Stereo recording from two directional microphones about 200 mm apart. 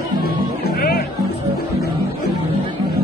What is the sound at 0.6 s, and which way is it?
Music, 45° left (ahead or behind).